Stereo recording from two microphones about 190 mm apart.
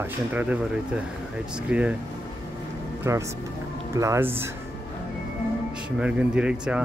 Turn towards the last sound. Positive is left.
turn(degrees=-5)  # may be behind; listen again after turning